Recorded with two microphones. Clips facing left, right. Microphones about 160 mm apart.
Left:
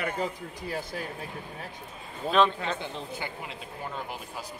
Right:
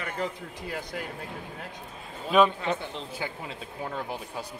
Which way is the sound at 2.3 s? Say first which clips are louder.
Right 2 dB; 10° right (ahead or behind).